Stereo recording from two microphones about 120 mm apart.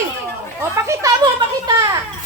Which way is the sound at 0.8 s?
25° right (ahead or behind).